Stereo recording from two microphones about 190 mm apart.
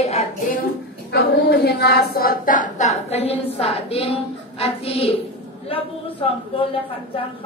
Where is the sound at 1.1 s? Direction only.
60° left (ahead or behind).